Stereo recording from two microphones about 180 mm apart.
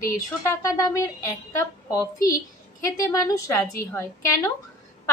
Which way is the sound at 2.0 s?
20° left (ahead or behind).